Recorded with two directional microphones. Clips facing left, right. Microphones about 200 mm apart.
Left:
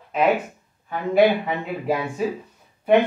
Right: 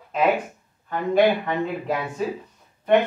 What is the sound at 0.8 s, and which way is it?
Speech, 10° left (ahead or behind).